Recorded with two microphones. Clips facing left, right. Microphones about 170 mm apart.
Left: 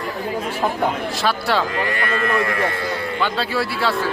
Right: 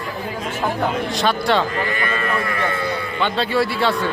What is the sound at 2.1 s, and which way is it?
Speech, 75° left (ahead or behind).